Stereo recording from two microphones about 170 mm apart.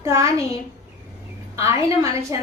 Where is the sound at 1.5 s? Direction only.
20° right (ahead or behind).